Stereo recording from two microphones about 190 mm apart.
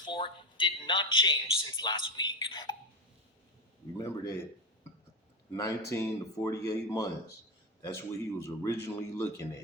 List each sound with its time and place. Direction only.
0.0 s a man's voice: 25° left (ahead or behind)
3.9 s a man's voice: 15° left (ahead or behind)